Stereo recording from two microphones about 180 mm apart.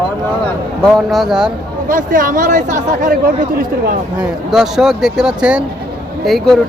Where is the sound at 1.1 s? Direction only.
Centre (ahead or behind).